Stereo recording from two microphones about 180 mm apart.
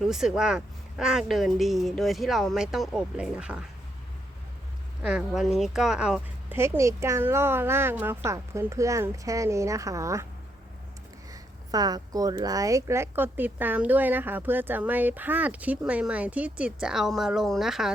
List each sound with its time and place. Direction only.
0.0 s a woman's voice: centre (ahead or behind)
5.0 s a woman's voice: 5° right (ahead or behind)
6.6 s speech: 15° right (ahead or behind)
11.3 s speech: 20° right (ahead or behind); by 17.9 s centre (ahead or behind)